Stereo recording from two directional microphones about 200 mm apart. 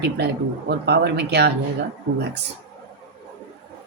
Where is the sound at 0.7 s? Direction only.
55° right (ahead or behind).